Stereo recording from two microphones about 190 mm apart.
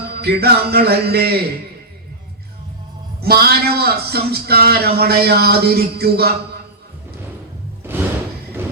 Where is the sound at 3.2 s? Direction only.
55° right (ahead or behind).